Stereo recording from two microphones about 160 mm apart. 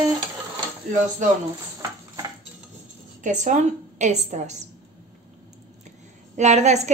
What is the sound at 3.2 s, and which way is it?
A woman's voice, 50° right (ahead or behind).